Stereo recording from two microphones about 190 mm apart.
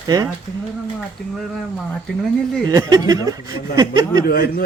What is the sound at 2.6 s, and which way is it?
Speech, 20° right (ahead or behind).